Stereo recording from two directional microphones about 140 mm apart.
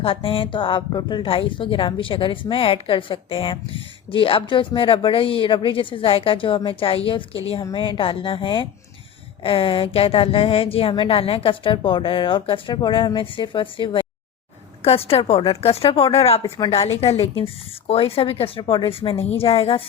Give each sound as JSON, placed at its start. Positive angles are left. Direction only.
{"t": 0.0, "sound": "a woman's voice", "side_deg": 40}
{"t": 16.4, "sound": "a woman's voice", "side_deg": 35}